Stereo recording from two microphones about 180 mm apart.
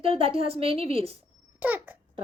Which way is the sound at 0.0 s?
30° right (ahead or behind).